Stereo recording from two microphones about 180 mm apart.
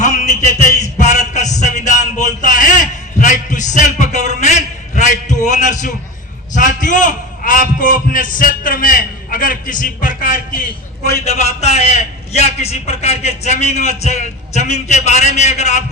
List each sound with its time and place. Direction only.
0.0 s a sound: 45° left (ahead or behind)
6.5 s a man's voice: 45° left (ahead or behind)
11.3 s a man's voice: 40° left (ahead or behind)